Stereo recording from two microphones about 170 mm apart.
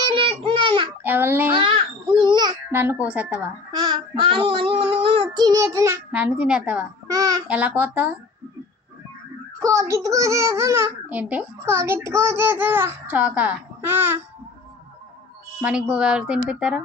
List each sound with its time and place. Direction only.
0.1 s babbling: 30° right (ahead or behind)
1.0 s a child's voice: 10° right (ahead or behind)
1.5 s babbling: 30° right (ahead or behind)
2.7 s a child's voice: 10° right (ahead or behind)
3.7 s child singing: 25° right (ahead or behind); by 6.8 s 5° right (ahead or behind)
7.1 s child singing: 20° right (ahead or behind)
7.4 s a child's voice: 10° right (ahead or behind)
9.6 s a child's voice: 20° right (ahead or behind)
15.6 s speech: 5° right (ahead or behind)